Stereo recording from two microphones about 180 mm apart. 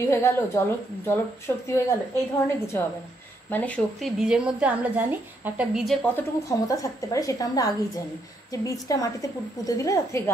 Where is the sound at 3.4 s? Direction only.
10° left (ahead or behind).